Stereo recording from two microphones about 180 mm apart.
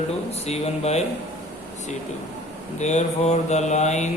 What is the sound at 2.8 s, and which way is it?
Mantra, 40° left (ahead or behind).